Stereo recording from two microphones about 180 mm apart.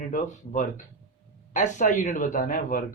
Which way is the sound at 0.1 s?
45° left (ahead or behind).